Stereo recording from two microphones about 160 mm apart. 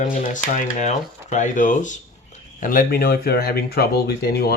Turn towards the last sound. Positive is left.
turn(degrees=80)